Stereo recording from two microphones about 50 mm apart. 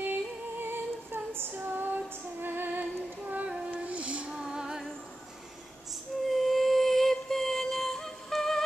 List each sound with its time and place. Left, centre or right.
0.0 s female singing: right
2.4 s music: right
3.3 s female singing: right
4.4 s music: centre
6.3 s music: centre